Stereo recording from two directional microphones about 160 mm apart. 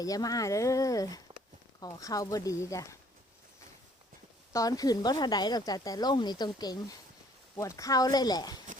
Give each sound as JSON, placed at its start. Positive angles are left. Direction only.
{"t": 0.0, "sound": "speech", "side_deg": 20}
{"t": 4.5, "sound": "speech", "side_deg": 20}